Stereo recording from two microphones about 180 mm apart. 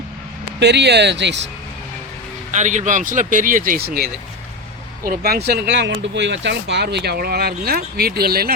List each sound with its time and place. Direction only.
0.6 s speech: 70° right (ahead or behind)
2.5 s speech: 40° right (ahead or behind); by 8.5 s 60° right (ahead or behind)